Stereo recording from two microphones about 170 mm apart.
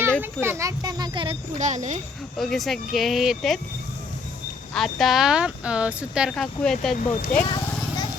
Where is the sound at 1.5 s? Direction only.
45° right (ahead or behind).